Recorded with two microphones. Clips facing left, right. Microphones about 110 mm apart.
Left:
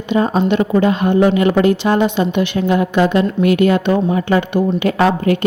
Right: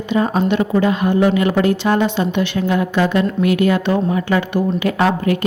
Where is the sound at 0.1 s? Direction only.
20° left (ahead or behind).